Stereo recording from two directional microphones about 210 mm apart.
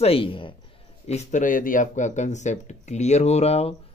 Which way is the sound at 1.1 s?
35° left (ahead or behind).